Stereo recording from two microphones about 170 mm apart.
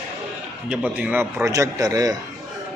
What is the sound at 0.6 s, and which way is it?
A man's voice, 5° right (ahead or behind).